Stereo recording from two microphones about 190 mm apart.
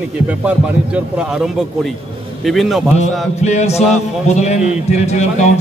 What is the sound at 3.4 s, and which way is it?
A man's voice, 35° left (ahead or behind).